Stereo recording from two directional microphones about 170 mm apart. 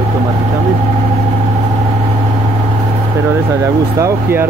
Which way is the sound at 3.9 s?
15° right (ahead or behind).